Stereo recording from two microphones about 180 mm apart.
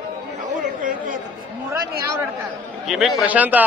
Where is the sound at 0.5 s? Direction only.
45° right (ahead or behind).